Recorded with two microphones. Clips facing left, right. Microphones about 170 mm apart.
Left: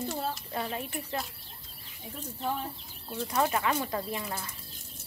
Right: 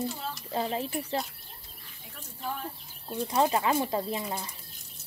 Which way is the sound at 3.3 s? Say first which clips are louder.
Right 3 dB; 25° right (ahead or behind).